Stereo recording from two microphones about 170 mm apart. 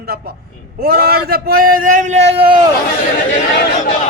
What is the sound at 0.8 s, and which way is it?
A man's voice, 65° right (ahead or behind).